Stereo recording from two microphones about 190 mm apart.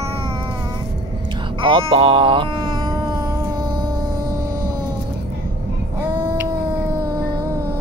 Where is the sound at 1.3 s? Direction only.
25° right (ahead or behind).